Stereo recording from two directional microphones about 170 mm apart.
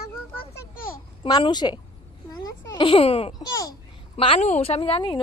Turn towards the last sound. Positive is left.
turn(degrees=30)  # may be behind; listen again after turning